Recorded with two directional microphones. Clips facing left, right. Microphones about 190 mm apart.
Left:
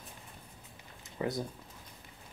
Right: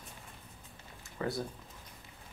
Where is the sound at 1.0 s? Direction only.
20° left (ahead or behind).